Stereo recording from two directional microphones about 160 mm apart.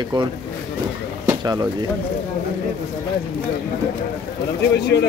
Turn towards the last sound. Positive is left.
turn(degrees=90)